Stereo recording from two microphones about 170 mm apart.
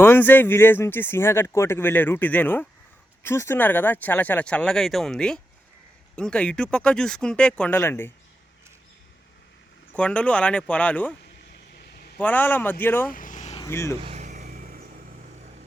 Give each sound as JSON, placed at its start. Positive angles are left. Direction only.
{"t": 0.0, "sound": "speech", "side_deg": 10}
{"t": 9.9, "sound": "speech", "side_deg": 5}
{"t": 12.2, "sound": "speech", "side_deg": 10}
{"t": 13.1, "sound": "vehicle", "side_deg": 50}
{"t": 13.6, "sound": "speech", "side_deg": 15}
{"t": 14.0, "sound": "vehicle", "side_deg": -40}
{"t": 14.4, "sound": "vehicle", "side_deg": -60}